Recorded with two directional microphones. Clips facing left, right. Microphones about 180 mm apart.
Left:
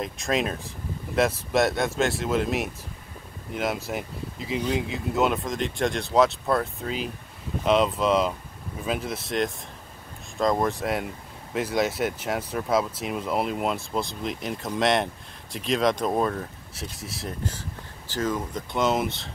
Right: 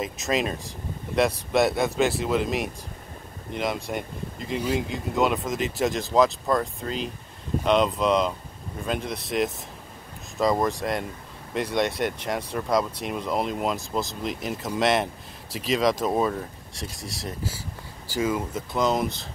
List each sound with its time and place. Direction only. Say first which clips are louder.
0.0 s speech: even; centre (ahead or behind)